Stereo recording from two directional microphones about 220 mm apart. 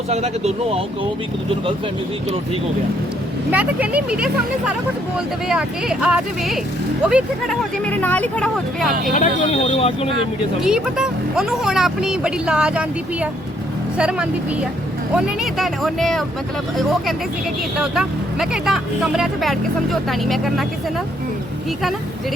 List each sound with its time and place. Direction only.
0.1 s speech: 30° right (ahead or behind)
3.5 s speech: 5° right (ahead or behind)
9.6 s speech: 25° left (ahead or behind)
10.6 s speech: 5° right (ahead or behind)
14.0 s speech: 5° right (ahead or behind)
17.9 s speech: centre (ahead or behind)